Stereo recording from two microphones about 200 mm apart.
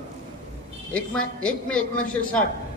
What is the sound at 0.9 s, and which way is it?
A man's voice, 5° left (ahead or behind).